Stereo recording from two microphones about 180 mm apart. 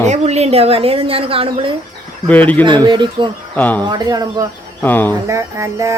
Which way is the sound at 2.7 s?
25° right (ahead or behind).